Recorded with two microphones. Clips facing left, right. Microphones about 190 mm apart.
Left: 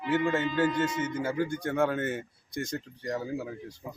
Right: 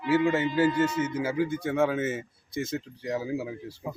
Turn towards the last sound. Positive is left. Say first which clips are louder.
# right 3 dB
turn(degrees=-5)  # may be behind; listen again after turning